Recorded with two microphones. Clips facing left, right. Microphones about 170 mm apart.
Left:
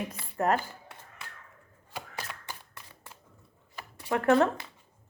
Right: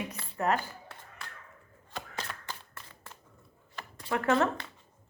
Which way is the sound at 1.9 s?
10° left (ahead or behind).